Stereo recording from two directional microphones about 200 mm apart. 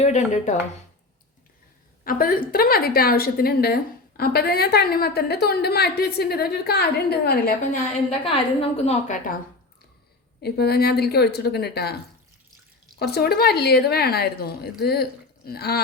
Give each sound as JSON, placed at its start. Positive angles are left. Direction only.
{"t": 0.0, "sound": "a woman's voice", "side_deg": 35}
{"t": 2.0, "sound": "a woman's voice", "side_deg": 45}
{"t": 8.2, "sound": "a woman's voice", "side_deg": 30}
{"t": 10.4, "sound": "a woman's voice", "side_deg": 50}
{"t": 13.0, "sound": "a woman's voice", "side_deg": 55}